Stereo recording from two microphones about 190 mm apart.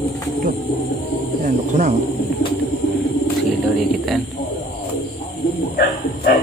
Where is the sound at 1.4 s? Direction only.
35° right (ahead or behind).